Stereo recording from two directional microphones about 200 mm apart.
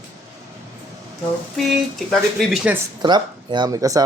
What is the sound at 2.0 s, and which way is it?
Speech, centre (ahead or behind).